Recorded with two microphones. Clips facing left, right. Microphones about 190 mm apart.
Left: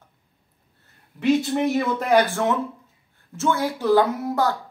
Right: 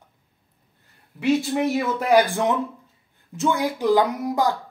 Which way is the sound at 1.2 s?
5° right (ahead or behind).